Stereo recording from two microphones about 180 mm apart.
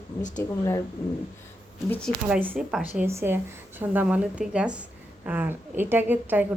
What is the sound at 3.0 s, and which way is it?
A woman's voice, 15° right (ahead or behind).